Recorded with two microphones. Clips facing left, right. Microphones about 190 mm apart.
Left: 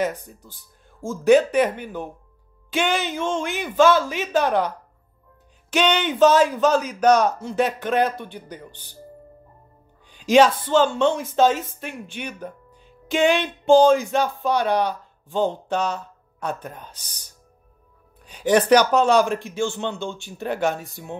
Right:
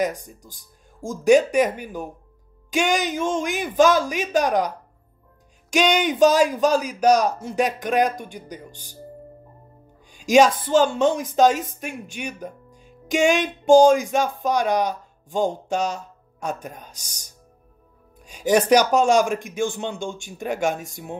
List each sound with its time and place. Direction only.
0.0 s speech: 15° right (ahead or behind)
8.6 s speech: 35° right (ahead or behind)
10.0 s speech: 15° right (ahead or behind)